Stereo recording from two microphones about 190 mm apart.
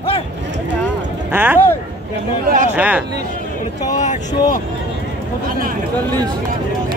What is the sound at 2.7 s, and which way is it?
Speech, 5° right (ahead or behind).